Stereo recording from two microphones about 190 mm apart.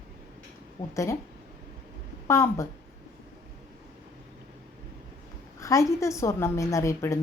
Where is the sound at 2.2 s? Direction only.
15° left (ahead or behind).